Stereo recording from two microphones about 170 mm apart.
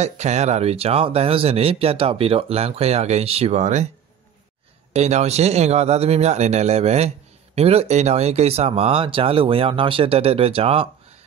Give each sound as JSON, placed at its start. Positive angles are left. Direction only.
{"t": 0.0, "sound": "speech", "side_deg": -40}
{"t": 4.9, "sound": "speech", "side_deg": -40}